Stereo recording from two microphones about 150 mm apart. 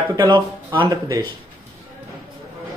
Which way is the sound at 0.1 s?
30° right (ahead or behind).